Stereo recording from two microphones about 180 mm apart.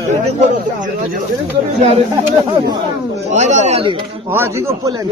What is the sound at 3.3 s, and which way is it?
Speech, 40° right (ahead or behind).